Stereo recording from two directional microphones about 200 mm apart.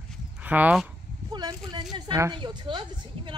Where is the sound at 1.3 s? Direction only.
20° right (ahead or behind).